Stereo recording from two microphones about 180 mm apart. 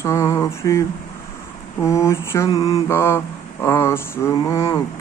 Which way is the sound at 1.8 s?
15° left (ahead or behind).